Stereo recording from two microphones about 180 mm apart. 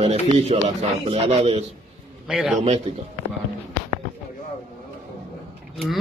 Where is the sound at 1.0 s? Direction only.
35° right (ahead or behind).